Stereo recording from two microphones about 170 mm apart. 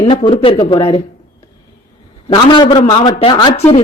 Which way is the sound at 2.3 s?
30° left (ahead or behind).